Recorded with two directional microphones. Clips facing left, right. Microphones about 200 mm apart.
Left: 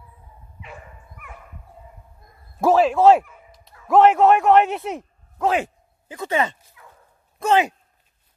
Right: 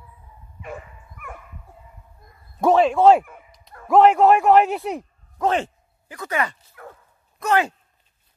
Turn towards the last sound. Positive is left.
turn(degrees=20)  # may be behind; listen again after turning